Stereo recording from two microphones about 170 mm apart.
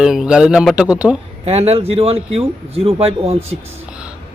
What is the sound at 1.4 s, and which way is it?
Speech, 35° right (ahead or behind).